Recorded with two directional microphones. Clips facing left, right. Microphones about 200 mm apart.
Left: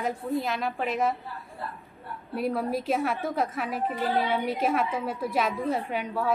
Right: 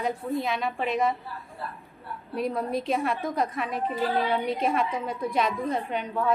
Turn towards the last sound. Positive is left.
turn(degrees=5)  # may be behind; listen again after turning